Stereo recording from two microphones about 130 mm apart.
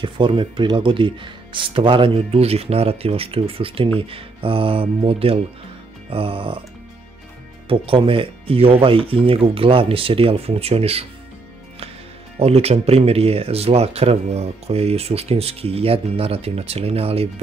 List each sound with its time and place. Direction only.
0.0 s speech: 40° right (ahead or behind)
7.6 s speech: 45° right (ahead or behind)
12.4 s speech: 55° right (ahead or behind)